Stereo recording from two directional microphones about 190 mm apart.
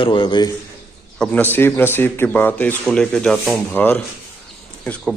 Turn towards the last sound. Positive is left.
turn(degrees=5)  # may be behind; listen again after turning